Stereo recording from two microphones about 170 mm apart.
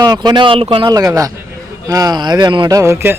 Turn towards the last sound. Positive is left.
turn(degrees=-15)  # may be behind; listen again after turning